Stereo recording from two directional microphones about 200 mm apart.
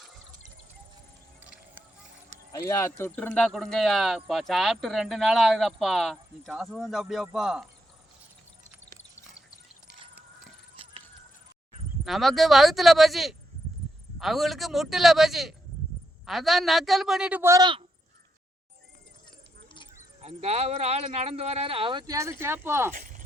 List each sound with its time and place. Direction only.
1.4 s a sound: 10° right (ahead or behind)
2.5 s speech: 15° left (ahead or behind); by 7.7 s 5° right (ahead or behind)
12.0 s speech: centre (ahead or behind); by 17.8 s 20° right (ahead or behind)
20.2 s speech: 30° right (ahead or behind); by 22.9 s 10° right (ahead or behind)
22.9 s speech: 40° right (ahead or behind)